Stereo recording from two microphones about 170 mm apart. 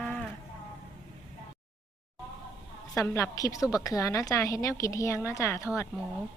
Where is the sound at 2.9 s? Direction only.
15° left (ahead or behind).